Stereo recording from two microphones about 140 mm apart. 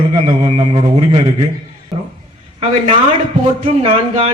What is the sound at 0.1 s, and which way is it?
A woman's voice, 45° right (ahead or behind).